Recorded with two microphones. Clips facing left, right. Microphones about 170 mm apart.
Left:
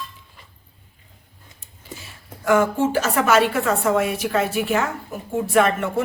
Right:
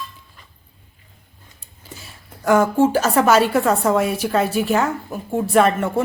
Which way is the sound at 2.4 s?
35° right (ahead or behind).